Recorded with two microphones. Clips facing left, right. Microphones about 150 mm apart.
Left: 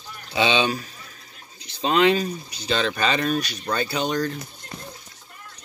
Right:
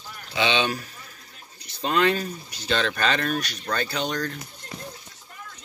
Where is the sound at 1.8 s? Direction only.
90° left.